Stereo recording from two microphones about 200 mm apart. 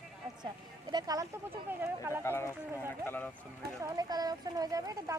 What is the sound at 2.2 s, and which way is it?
Speech, 15° left (ahead or behind).